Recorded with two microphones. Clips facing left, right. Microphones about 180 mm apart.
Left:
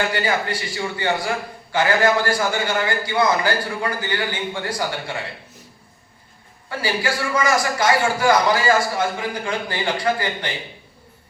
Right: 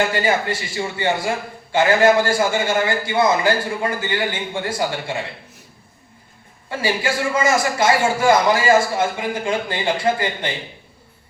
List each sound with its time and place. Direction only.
0.2 s a man's voice: 25° right (ahead or behind)
6.7 s a man's voice: 25° right (ahead or behind)